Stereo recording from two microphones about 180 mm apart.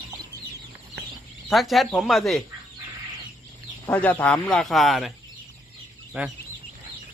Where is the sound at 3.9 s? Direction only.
10° left (ahead or behind); by 6.3 s 10° right (ahead or behind).